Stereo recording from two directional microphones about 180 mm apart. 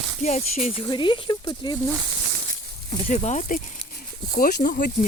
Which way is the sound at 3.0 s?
40° left (ahead or behind).